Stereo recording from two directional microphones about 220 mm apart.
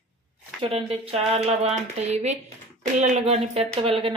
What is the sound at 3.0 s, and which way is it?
Speech, 35° right (ahead or behind).